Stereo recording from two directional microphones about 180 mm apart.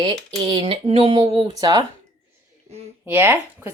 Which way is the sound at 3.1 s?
10° right (ahead or behind).